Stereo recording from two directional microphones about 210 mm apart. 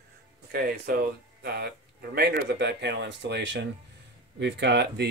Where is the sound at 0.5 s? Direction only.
45° right (ahead or behind).